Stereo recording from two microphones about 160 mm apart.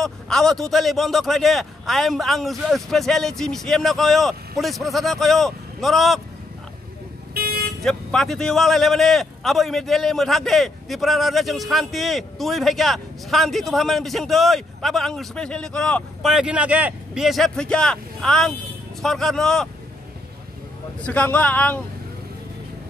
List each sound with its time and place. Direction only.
0.0 s a man's voice: 5° left (ahead or behind)
7.3 s vehicle: 75° right (ahead or behind)
7.8 s a man's voice: 5° left (ahead or behind)
21.0 s speech: 10° left (ahead or behind)